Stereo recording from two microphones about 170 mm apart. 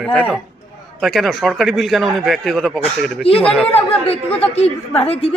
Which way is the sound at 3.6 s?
35° left (ahead or behind).